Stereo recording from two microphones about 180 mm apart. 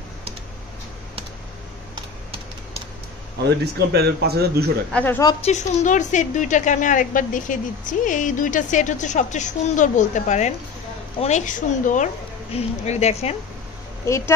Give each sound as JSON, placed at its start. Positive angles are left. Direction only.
{"t": 3.4, "sound": "a man's voice", "side_deg": -65}
{"t": 4.9, "sound": "speech", "side_deg": 10}
{"t": 5.4, "sound": "a woman's voice", "side_deg": 40}
{"t": 14.0, "sound": "speech", "side_deg": 15}